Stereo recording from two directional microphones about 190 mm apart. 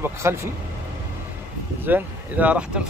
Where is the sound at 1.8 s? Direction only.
10° right (ahead or behind).